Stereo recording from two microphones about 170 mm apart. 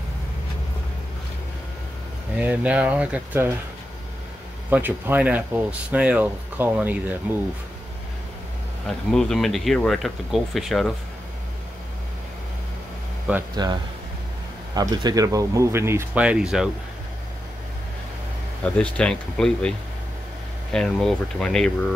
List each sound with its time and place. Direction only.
2.3 s speech: 10° right (ahead or behind)
4.6 s speech: 10° right (ahead or behind)
8.8 s speech: centre (ahead or behind)
13.6 s speech: 25° right (ahead or behind); by 16.7 s 5° right (ahead or behind)
18.6 s speech: 5° left (ahead or behind)
20.7 s speech: 5° left (ahead or behind)